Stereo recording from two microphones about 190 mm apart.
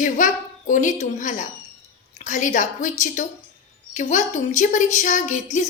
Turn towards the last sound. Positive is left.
turn(degrees=40)  # may be behind; listen again after turning